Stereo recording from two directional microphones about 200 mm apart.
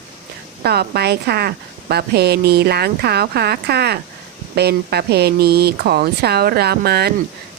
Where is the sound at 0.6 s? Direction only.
50° right (ahead or behind).